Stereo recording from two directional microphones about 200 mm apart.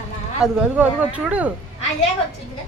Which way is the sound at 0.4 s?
5° right (ahead or behind).